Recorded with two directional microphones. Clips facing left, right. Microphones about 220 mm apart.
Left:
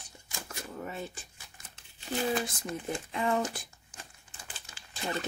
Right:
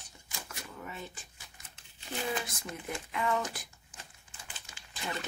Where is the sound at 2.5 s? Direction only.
25° left (ahead or behind).